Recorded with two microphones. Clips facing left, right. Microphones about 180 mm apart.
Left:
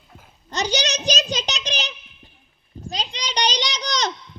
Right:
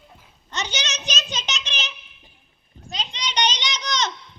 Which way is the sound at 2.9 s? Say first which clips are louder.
Left 2 dB; 35° left (ahead or behind).